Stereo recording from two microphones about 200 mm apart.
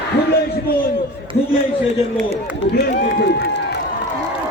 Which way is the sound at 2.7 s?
55° left (ahead or behind).